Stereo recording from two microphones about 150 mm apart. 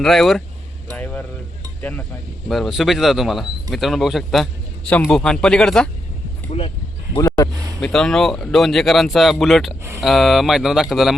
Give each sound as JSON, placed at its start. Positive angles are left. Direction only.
{"t": 0.0, "sound": "speech", "side_deg": 0}
{"t": 0.9, "sound": "a sound", "side_deg": 10}
{"t": 1.8, "sound": "speech", "side_deg": 10}
{"t": 7.2, "sound": "speech", "side_deg": 25}
{"t": 7.8, "sound": "speech", "side_deg": 5}